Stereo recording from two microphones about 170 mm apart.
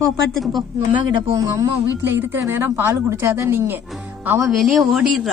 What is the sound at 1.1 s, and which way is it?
Speech, 25° right (ahead or behind).